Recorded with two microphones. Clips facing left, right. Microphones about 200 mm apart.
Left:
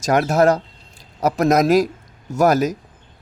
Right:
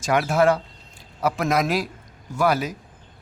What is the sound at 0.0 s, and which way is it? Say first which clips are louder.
A man's voice: left 4 dB; 40° left (ahead or behind).